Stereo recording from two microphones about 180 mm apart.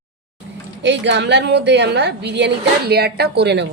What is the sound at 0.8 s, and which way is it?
A woman's voice, 75° right (ahead or behind).